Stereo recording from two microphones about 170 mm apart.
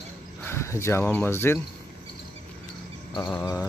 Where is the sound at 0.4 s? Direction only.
15° left (ahead or behind).